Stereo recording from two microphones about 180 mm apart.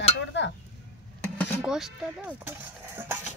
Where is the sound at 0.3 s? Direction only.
75° left (ahead or behind).